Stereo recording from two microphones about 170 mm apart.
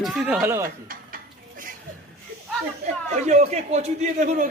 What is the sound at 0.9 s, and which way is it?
Dishes, 55° right (ahead or behind).